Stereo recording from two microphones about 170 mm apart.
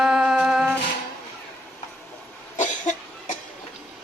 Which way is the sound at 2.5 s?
50° left (ahead or behind).